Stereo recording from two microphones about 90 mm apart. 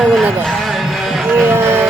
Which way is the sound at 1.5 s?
30° right (ahead or behind).